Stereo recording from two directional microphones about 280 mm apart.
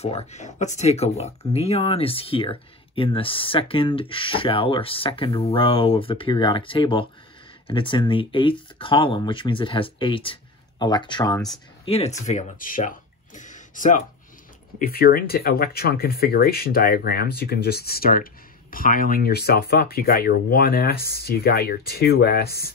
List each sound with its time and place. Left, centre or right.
0.0 s speech: left